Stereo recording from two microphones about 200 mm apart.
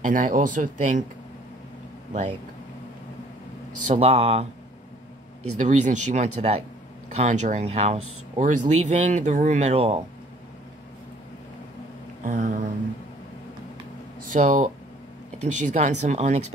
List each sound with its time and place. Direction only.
0.0 s speech: 40° right (ahead or behind)
3.9 s speech: 30° right (ahead or behind)
5.6 s speech: 40° right (ahead or behind)
12.2 s speech: 40° right (ahead or behind)
14.3 s speech: 40° right (ahead or behind)